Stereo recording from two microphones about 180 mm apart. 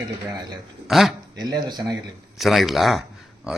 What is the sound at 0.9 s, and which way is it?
Speech, centre (ahead or behind).